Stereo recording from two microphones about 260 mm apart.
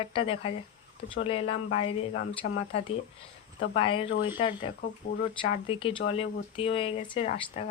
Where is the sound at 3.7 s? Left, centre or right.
Left.